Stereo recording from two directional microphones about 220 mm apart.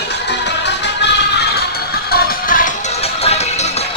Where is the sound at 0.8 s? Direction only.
50° left (ahead or behind).